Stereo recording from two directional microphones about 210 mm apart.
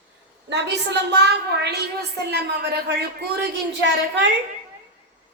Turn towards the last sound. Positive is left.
turn(degrees=-55)  # may be behind; listen again after turning